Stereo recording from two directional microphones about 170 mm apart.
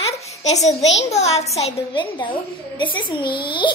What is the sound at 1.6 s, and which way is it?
Child singing, 35° left (ahead or behind).